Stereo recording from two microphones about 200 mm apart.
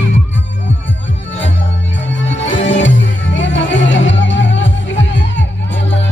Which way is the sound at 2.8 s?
65° left (ahead or behind).